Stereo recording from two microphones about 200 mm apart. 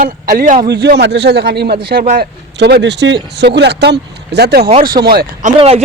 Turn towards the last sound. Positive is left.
turn(degrees=-50)  # may be behind; listen again after turning